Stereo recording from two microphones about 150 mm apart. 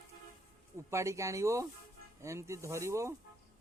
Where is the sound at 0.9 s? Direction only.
20° right (ahead or behind).